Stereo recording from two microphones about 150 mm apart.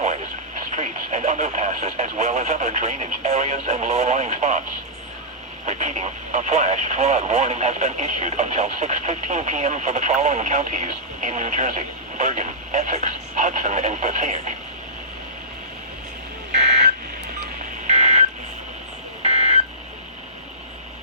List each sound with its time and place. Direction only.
0.7 s speech: 55° right (ahead or behind)
5.6 s speech: 55° right (ahead or behind)
16.5 s beep: 55° right (ahead or behind)
17.8 s beep: 50° right (ahead or behind)